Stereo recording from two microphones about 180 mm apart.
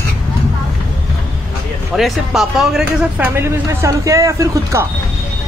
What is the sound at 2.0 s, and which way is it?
Speech, centre (ahead or behind).